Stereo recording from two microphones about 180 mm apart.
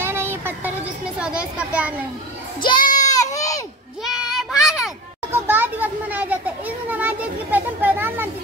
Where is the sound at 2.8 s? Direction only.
50° left (ahead or behind).